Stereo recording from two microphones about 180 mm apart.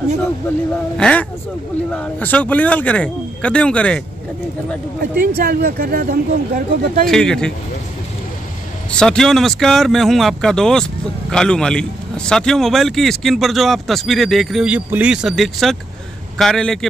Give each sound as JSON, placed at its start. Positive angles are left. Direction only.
{"t": 0.9, "sound": "speech", "side_deg": 5}
{"t": 5.2, "sound": "speech", "side_deg": -55}
{"t": 7.1, "sound": "speech", "side_deg": 5}
{"t": 8.9, "sound": "speech", "side_deg": 5}